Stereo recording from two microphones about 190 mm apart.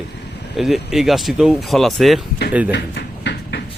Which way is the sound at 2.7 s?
60° left (ahead or behind).